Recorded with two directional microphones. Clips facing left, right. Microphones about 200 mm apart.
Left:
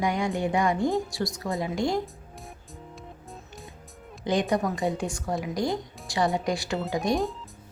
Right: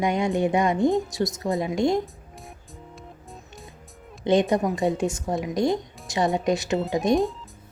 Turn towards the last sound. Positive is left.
turn(degrees=0)  # may be behind; listen again after turning